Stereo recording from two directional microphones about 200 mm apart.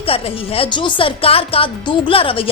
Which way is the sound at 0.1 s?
25° left (ahead or behind).